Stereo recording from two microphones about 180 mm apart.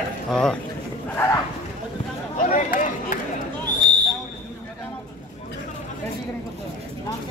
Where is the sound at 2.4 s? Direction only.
45° left (ahead or behind).